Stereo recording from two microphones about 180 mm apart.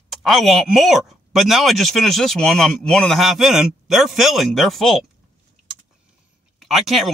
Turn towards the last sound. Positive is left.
turn(degrees=0)  # may be behind; listen again after turning